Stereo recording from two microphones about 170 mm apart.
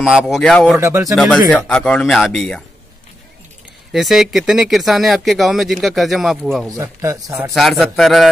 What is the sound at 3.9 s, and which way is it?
Speech, centre (ahead or behind).